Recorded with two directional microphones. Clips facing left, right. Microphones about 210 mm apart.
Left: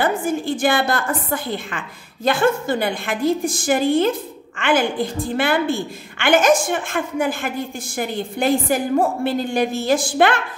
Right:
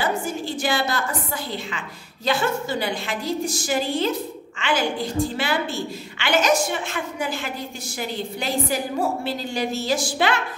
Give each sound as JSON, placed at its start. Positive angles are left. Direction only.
{"t": 0.0, "sound": "a woman's voice", "side_deg": 55}